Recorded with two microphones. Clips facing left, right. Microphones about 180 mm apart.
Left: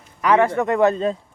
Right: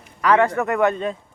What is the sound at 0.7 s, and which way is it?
Speech, 30° left (ahead or behind).